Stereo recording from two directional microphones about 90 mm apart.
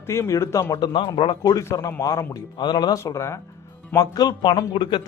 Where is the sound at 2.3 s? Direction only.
55° left (ahead or behind).